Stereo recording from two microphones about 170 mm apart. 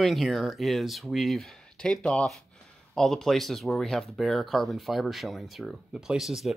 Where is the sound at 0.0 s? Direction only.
Centre (ahead or behind).